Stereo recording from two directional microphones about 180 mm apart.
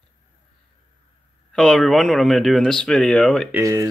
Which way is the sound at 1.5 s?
Centre (ahead or behind).